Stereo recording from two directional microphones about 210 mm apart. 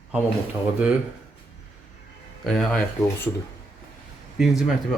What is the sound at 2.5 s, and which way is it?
Speech, centre (ahead or behind).